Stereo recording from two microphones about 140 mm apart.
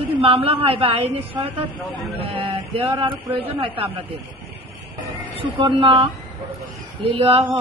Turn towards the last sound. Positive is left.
turn(degrees=-40)  # may be behind; listen again after turning